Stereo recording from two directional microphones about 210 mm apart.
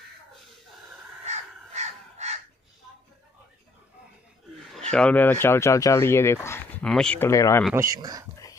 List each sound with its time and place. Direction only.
1.2 s crow: 30° right (ahead or behind)
4.9 s speech: 5° left (ahead or behind)
7.7 s speech: 15° right (ahead or behind)